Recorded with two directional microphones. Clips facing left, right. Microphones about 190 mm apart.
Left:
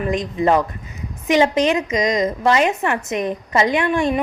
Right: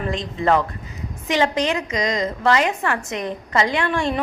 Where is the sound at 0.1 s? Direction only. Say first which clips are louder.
Left 2 dB; 15° left (ahead or behind).